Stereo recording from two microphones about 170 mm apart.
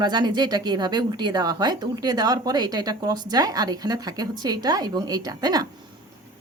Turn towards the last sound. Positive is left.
turn(degrees=-25)  # may be behind; listen again after turning